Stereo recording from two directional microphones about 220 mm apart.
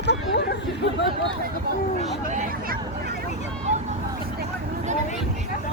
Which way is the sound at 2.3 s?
35° right (ahead or behind).